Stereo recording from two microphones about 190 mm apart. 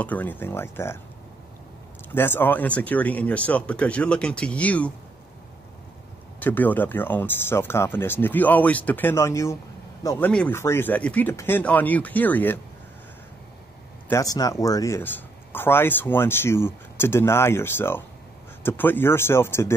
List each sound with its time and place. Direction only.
0.0 s speech: 10° left (ahead or behind)
2.1 s speech: 10° left (ahead or behind)
6.4 s speech: 10° left (ahead or behind)
14.0 s speech: 15° left (ahead or behind)